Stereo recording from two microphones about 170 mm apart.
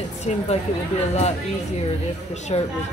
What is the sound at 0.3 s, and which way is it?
Speech, 40° left (ahead or behind).